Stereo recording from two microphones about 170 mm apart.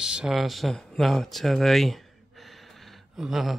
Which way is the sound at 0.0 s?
5° right (ahead or behind).